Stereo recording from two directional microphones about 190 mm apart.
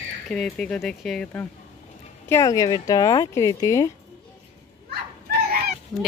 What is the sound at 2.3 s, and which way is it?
Speech, 15° left (ahead or behind).